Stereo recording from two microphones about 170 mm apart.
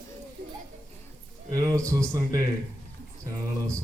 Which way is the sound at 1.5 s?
20° right (ahead or behind).